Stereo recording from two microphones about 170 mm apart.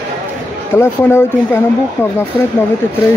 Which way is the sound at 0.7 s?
15° left (ahead or behind).